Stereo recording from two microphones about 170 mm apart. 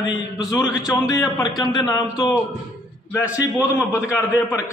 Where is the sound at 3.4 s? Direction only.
15° left (ahead or behind).